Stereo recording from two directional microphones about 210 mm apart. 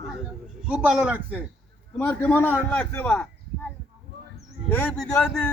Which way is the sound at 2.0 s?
10° left (ahead or behind).